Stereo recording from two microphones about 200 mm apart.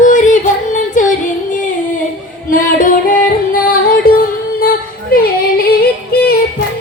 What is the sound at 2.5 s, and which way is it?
Music, 45° left (ahead or behind).